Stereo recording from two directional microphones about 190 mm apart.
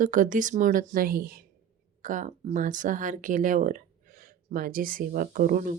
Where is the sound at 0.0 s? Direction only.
45° right (ahead or behind).